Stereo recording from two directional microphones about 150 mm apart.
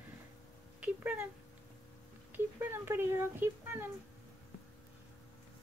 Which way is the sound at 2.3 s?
15° right (ahead or behind).